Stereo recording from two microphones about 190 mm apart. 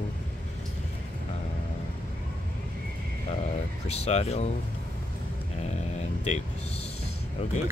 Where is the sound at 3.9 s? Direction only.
35° left (ahead or behind).